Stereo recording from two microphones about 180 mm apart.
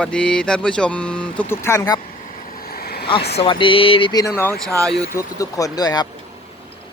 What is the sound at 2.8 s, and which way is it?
Vehicle, 60° left (ahead or behind).